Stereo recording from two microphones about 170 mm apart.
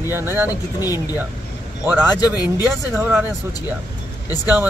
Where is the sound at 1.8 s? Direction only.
10° right (ahead or behind).